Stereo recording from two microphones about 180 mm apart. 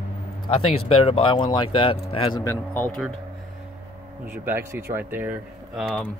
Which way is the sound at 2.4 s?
10° left (ahead or behind).